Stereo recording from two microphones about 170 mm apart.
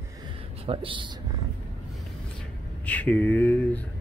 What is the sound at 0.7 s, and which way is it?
Speech, 30° right (ahead or behind).